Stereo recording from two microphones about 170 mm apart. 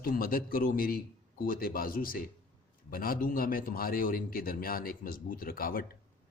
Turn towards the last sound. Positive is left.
turn(degrees=60)  # may be behind; listen again after turning